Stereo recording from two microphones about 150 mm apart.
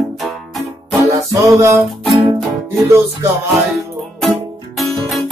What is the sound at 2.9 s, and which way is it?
Music, 20° right (ahead or behind).